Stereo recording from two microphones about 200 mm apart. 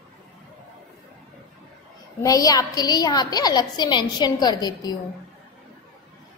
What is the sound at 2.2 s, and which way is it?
A woman's voice, 15° left (ahead or behind).